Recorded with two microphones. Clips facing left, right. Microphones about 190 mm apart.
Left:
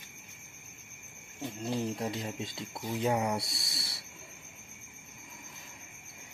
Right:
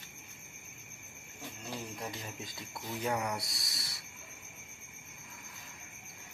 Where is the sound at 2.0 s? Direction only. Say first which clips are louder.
Left 7 dB; 25° left (ahead or behind).